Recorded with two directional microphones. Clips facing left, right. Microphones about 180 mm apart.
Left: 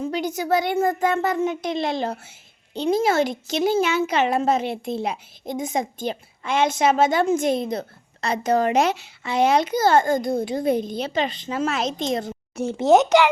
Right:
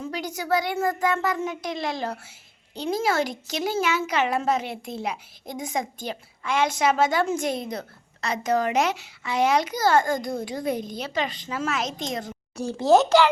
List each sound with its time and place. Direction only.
0.0 s a child's voice: 25° left (ahead or behind)